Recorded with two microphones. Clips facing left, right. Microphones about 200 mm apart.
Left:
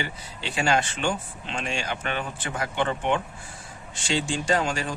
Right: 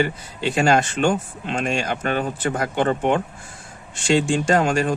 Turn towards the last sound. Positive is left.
turn(degrees=-50)  # may be behind; listen again after turning